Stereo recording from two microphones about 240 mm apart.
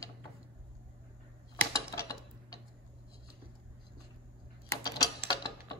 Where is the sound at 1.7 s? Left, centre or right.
Centre.